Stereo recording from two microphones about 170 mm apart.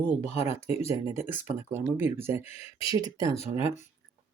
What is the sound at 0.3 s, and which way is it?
Speech, 15° right (ahead or behind).